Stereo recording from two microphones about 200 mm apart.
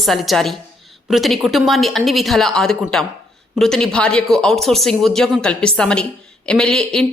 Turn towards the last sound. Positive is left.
turn(degrees=5)  # may be behind; listen again after turning